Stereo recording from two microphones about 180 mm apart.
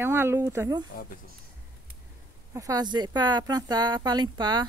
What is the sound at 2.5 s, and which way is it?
Speech, 20° right (ahead or behind).